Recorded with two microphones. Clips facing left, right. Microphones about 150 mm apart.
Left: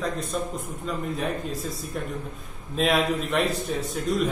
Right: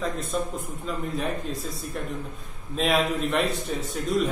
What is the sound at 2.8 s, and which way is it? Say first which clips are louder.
A man's voice: left 1 dB; centre (ahead or behind).